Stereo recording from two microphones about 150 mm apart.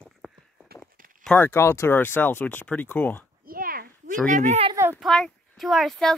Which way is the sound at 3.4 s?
75° right (ahead or behind).